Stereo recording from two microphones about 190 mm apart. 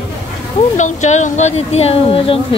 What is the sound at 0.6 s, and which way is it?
Speech, 40° left (ahead or behind).